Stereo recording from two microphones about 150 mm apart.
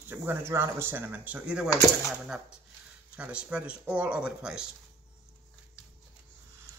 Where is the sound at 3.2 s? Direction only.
10° right (ahead or behind).